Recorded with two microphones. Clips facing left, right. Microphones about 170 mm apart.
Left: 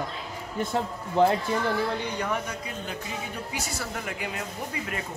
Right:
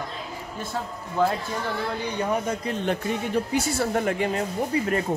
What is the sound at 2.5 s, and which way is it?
Speech, 55° right (ahead or behind).